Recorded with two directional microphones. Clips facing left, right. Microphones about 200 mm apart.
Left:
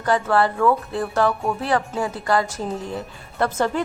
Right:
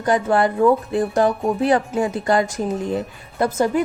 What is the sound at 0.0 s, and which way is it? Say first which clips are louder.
A woman's voice: right 2 dB; 20° right (ahead or behind).